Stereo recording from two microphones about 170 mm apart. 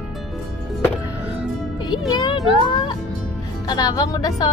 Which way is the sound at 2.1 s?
20° left (ahead or behind).